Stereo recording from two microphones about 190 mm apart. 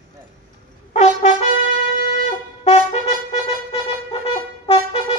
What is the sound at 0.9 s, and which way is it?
Brass instrument, 40° left (ahead or behind).